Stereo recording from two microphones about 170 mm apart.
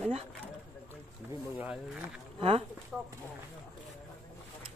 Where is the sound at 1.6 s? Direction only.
10° right (ahead or behind).